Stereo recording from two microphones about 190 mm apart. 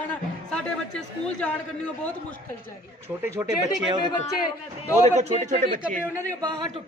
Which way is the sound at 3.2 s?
15° right (ahead or behind).